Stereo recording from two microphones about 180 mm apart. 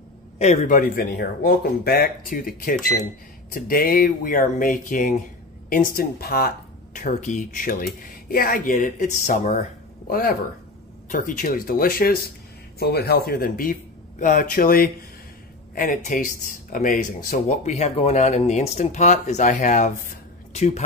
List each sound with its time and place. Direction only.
0.4 s speech: 40° left (ahead or behind)
7.0 s speech: 45° left (ahead or behind)